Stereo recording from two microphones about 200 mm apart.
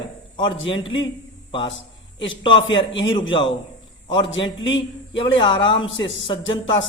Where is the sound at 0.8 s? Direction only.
70° left (ahead or behind).